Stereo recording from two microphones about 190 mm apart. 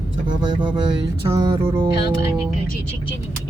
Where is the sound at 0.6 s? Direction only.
25° right (ahead or behind).